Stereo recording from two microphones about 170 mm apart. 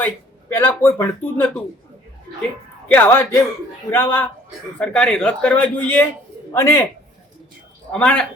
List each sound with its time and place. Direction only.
0.0 s speech: 10° left (ahead or behind)
2.9 s a man's voice: 10° left (ahead or behind)
7.9 s speech: 5° left (ahead or behind)